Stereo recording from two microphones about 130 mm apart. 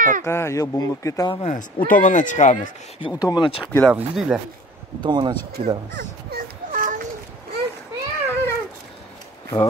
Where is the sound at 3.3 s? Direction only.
35° left (ahead or behind).